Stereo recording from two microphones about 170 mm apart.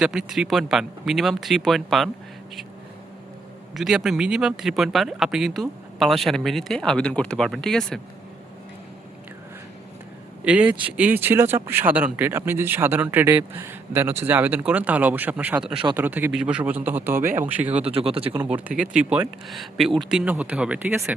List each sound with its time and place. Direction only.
0.0 s speech: centre (ahead or behind)
3.8 s speech: centre (ahead or behind)
10.4 s speech: 10° right (ahead or behind)
17.7 s speech: 35° right (ahead or behind)
18.4 s speech: 5° right (ahead or behind)